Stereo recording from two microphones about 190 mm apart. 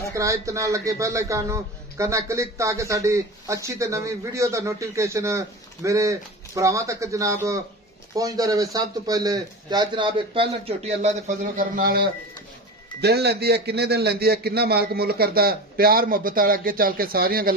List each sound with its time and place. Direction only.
0.1 s a man's voice: 15° right (ahead or behind); by 17.6 s 50° right (ahead or behind)